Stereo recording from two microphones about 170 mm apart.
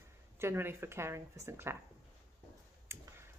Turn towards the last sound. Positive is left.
turn(degrees=-15)  # may be behind; listen again after turning